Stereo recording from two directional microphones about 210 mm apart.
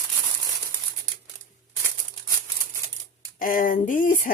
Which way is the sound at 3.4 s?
40° left (ahead or behind).